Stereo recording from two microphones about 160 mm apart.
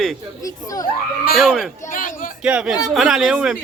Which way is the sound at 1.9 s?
55° left (ahead or behind).